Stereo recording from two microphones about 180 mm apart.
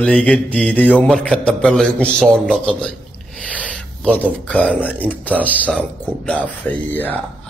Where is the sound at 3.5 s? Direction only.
5° left (ahead or behind).